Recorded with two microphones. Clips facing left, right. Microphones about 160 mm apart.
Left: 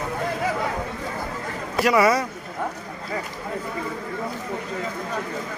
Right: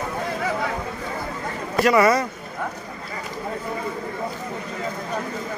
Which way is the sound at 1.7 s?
5° left (ahead or behind).